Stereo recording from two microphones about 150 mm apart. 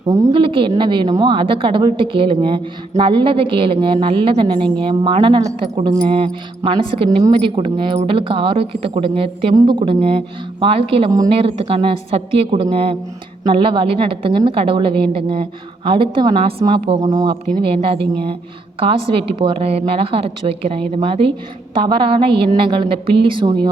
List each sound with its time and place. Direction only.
0.3 s a woman's voice: 35° right (ahead or behind)
17.1 s speech: 25° right (ahead or behind)
17.8 s a woman's voice: 40° right (ahead or behind)